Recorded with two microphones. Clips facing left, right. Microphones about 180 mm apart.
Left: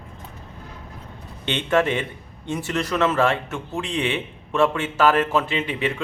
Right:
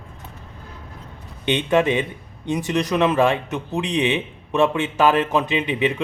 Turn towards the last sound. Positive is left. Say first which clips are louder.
# right 4 dB
turn(degrees=-20)  # may be behind; listen again after turning